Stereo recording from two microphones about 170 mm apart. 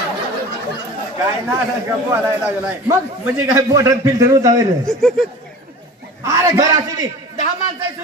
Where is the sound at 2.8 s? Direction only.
20° right (ahead or behind).